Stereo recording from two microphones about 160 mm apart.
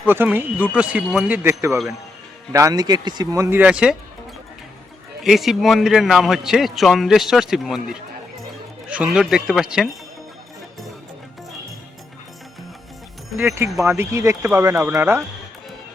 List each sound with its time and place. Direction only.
0.1 s speech: 15° right (ahead or behind)
5.2 s a man's voice: centre (ahead or behind)
13.3 s speech: 15° right (ahead or behind)